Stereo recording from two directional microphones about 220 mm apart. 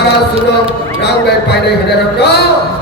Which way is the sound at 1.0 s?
50° left (ahead or behind).